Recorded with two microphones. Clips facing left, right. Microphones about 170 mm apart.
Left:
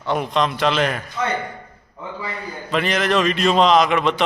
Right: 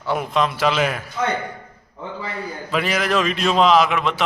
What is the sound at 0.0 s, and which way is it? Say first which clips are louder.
A man's voice: even; 5° right (ahead or behind).